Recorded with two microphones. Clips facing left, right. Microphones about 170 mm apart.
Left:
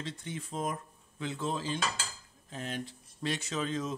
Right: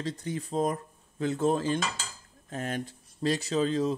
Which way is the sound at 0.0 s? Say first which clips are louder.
Right 7 dB; 40° right (ahead or behind).